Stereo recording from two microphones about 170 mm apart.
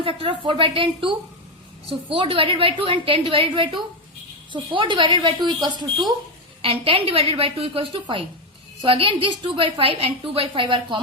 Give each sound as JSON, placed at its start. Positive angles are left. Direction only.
{"t": 0.0, "sound": "a woman's voice", "side_deg": -30}